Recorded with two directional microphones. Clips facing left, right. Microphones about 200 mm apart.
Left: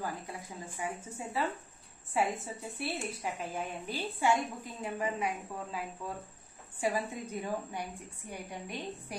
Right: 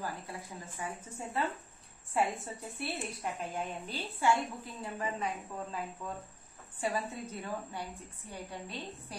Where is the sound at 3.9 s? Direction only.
15° left (ahead or behind).